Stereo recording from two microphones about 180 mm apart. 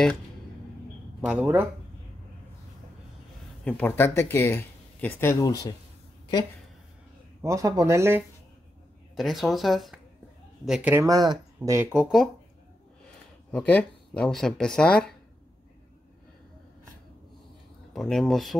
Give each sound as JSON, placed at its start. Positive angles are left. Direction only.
{"t": 1.2, "sound": "speech", "side_deg": -10}
{"t": 3.6, "sound": "speech", "side_deg": 10}
{"t": 7.4, "sound": "speech", "side_deg": -20}
{"t": 9.1, "sound": "speech", "side_deg": 0}
{"t": 11.1, "sound": "speech", "side_deg": -20}
{"t": 17.9, "sound": "speech", "side_deg": 0}